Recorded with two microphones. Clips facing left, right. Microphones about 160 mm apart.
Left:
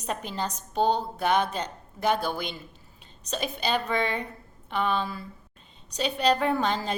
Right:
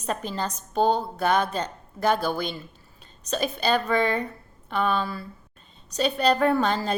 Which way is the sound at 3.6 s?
15° left (ahead or behind).